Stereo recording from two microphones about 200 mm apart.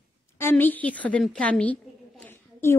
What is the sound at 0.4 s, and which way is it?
A woman's voice, 10° left (ahead or behind).